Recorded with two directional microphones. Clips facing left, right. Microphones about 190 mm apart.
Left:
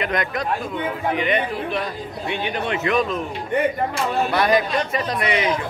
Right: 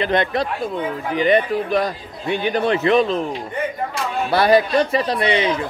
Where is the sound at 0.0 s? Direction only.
30° right (ahead or behind).